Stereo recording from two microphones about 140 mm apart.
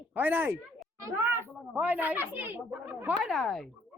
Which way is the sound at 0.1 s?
15° right (ahead or behind).